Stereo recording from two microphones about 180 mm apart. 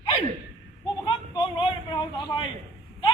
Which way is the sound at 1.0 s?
25° left (ahead or behind).